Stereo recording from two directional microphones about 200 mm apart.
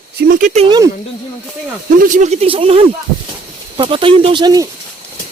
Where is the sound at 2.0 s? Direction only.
40° right (ahead or behind); by 4.7 s 20° right (ahead or behind).